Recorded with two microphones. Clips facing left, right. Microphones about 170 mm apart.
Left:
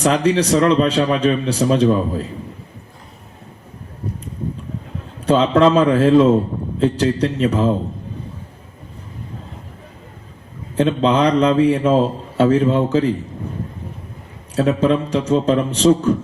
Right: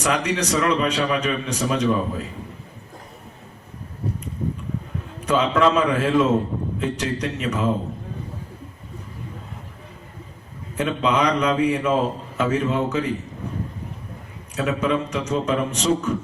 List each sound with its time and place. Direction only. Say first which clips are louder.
0.0 s a man's voice: left 7 dB; 30° left (ahead or behind)
5.2 s a man's voice: left 5 dB; 30° left (ahead or behind)
10.8 s a man's voice: left 6 dB; 30° left (ahead or behind)
14.5 s a man's voice: left 6 dB; 30° left (ahead or behind)